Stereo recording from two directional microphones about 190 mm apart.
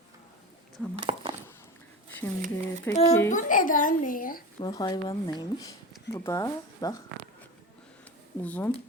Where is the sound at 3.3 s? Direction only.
45° left (ahead or behind).